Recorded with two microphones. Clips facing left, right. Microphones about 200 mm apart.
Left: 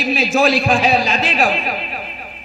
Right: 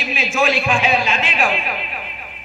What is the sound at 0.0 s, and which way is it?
A woman's voice, 40° left (ahead or behind).